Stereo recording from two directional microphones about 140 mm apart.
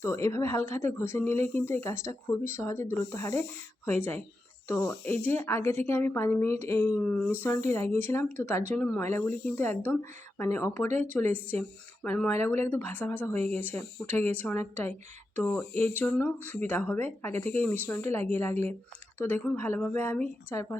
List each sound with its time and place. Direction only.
0.0 s speech: 20° left (ahead or behind)